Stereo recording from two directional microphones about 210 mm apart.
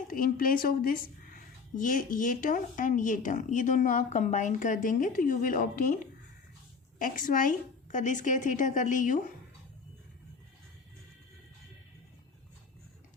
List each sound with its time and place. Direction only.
0.1 s a woman's voice: 40° left (ahead or behind)
7.0 s a woman's voice: 40° left (ahead or behind)